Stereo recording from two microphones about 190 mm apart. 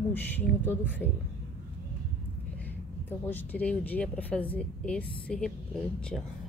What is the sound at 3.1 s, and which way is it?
Speech, 10° left (ahead or behind).